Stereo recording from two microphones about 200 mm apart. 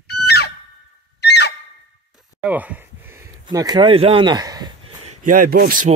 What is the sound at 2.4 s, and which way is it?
Speech, 5° right (ahead or behind).